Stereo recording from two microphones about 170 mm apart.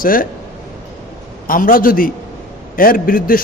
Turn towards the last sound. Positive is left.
turn(degrees=55)  # may be behind; listen again after turning